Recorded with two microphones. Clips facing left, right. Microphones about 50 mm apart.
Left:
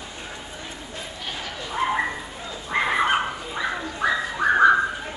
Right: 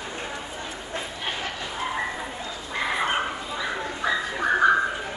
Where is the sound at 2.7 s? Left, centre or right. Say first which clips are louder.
Left 4 dB; left.